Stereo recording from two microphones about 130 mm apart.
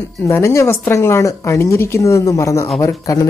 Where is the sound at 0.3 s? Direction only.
20° left (ahead or behind).